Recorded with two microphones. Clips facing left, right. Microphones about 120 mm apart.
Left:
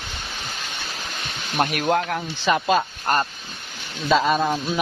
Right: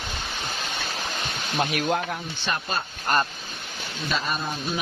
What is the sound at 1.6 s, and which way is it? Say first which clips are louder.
Speech: left 4 dB; 50° left (ahead or behind).